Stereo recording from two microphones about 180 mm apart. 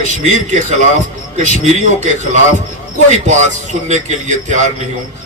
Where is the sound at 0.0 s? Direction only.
40° right (ahead or behind).